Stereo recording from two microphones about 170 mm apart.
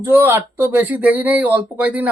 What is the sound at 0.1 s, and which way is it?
Speech, 15° right (ahead or behind).